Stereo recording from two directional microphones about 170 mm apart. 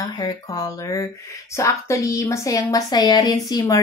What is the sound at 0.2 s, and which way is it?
Speech, 20° left (ahead or behind).